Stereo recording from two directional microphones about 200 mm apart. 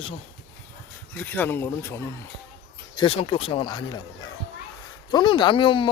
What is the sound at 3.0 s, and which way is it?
Speech, 25° left (ahead or behind).